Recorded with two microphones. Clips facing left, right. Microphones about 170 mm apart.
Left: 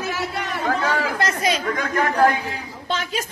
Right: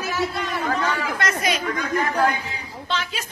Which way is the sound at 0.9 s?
30° left (ahead or behind).